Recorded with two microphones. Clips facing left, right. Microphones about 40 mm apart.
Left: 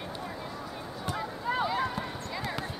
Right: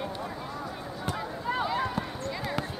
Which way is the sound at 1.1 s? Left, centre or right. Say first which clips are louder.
Even; centre.